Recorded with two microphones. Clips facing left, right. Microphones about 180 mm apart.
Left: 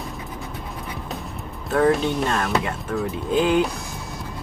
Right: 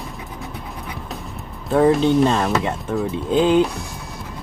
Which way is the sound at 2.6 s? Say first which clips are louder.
Right 3 dB; 20° right (ahead or behind).